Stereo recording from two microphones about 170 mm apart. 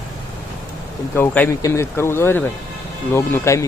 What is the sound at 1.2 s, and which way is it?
Speech, 10° left (ahead or behind).